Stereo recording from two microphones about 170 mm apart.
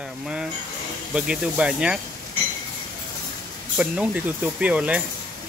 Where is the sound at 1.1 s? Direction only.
5° right (ahead or behind).